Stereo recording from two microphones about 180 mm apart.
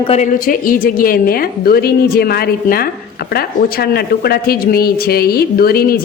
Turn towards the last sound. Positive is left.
turn(degrees=55)  # may be behind; listen again after turning